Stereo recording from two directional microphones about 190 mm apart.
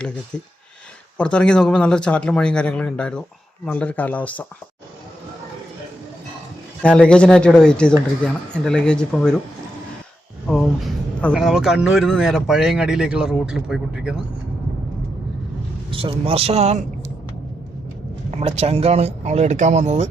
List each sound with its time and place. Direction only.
1.2 s speech: 5° left (ahead or behind)
6.8 s speech: 5° left (ahead or behind)
10.4 s speech: 5° left (ahead or behind)
15.9 s speech: 25° right (ahead or behind)
18.3 s speech: 35° right (ahead or behind)